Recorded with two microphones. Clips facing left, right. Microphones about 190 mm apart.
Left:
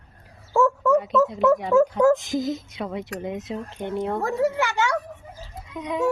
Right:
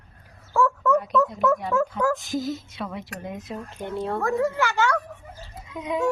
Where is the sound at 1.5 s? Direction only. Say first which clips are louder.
Left 6 dB; 20° left (ahead or behind).